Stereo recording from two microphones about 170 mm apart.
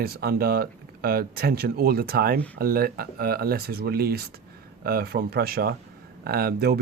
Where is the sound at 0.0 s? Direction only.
65° right (ahead or behind).